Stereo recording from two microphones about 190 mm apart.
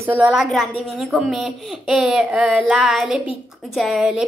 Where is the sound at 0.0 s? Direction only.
10° right (ahead or behind).